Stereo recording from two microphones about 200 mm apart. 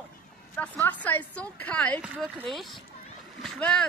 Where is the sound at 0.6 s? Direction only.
10° left (ahead or behind).